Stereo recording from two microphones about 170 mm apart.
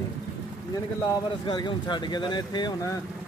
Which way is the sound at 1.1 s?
25° left (ahead or behind).